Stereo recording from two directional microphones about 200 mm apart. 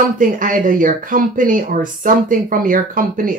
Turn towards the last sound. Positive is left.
turn(degrees=-45)  # may be behind; listen again after turning